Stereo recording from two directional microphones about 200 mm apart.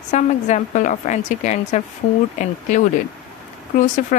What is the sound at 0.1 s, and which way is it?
Speech, 40° left (ahead or behind).